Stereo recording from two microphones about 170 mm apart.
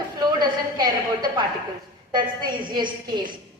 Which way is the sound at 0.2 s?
25° right (ahead or behind).